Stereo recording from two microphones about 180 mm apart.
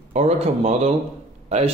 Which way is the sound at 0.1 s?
35° right (ahead or behind).